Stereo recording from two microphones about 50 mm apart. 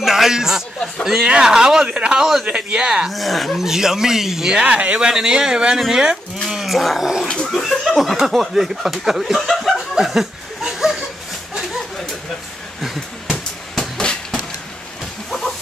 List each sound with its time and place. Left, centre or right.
0.0 s a man's voice: centre
3.1 s speech: centre
4.6 s speech: right
5.1 s speech: centre
7.2 s speech: centre
7.5 s speech: centre
13.7 s train: centre